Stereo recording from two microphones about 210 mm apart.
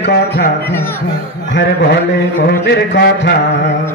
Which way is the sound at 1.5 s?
55° left (ahead or behind).